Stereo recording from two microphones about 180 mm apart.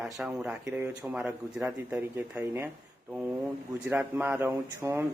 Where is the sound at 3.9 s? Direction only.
10° right (ahead or behind).